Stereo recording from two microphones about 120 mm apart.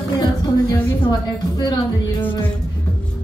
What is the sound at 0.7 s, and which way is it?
A woman's voice, 35° left (ahead or behind).